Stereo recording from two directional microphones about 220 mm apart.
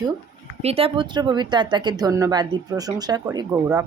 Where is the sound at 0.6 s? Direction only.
25° right (ahead or behind).